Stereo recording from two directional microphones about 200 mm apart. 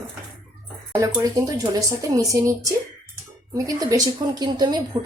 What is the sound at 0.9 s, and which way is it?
A woman's voice, 15° right (ahead or behind).